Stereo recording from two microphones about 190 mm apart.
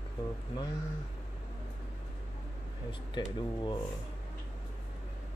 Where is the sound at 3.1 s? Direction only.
25° left (ahead or behind).